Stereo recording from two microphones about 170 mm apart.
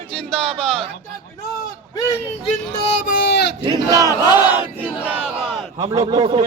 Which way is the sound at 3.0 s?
60° left (ahead or behind).